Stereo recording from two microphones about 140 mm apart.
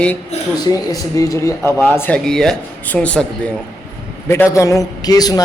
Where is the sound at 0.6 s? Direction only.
25° left (ahead or behind); by 3.5 s 10° left (ahead or behind).